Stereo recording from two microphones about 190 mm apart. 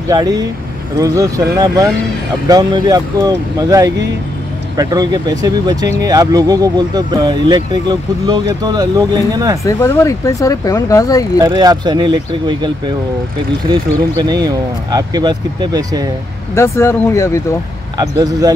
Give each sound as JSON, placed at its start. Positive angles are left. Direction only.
{"t": 0.1, "sound": "speech", "side_deg": -20}
{"t": 9.7, "sound": "speech", "side_deg": 15}
{"t": 11.5, "sound": "speech", "side_deg": -20}
{"t": 16.5, "sound": "speech", "side_deg": 15}
{"t": 17.9, "sound": "speech", "side_deg": -20}